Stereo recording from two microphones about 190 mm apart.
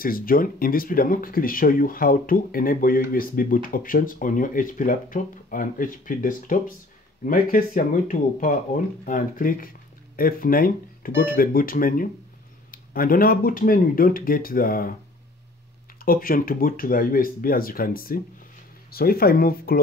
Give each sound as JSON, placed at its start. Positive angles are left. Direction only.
{"t": 0.0, "sound": "speech", "side_deg": 50}
{"t": 16.1, "sound": "speech", "side_deg": 50}